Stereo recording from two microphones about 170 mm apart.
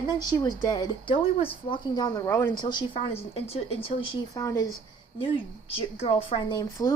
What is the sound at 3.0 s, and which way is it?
Speech, 35° left (ahead or behind).